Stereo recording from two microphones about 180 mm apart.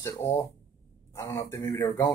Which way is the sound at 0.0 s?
15° left (ahead or behind).